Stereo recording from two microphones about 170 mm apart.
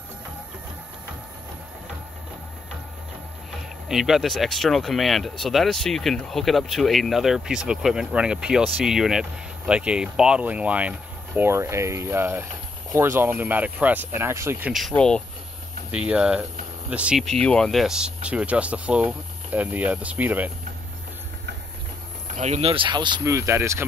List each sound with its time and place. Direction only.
3.9 s speech: centre (ahead or behind)
14.7 s speech: centre (ahead or behind)
15.9 s speech: 5° right (ahead or behind)
22.3 s speech: 40° right (ahead or behind); by 23.8 s 15° right (ahead or behind)